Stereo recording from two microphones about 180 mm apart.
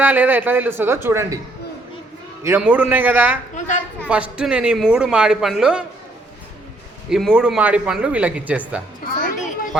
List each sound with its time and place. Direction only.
0.0 s a man's voice: 10° right (ahead or behind)
2.4 s a man's voice: 10° right (ahead or behind)
7.1 s a man's voice: centre (ahead or behind)
9.0 s a child's voice: 50° left (ahead or behind)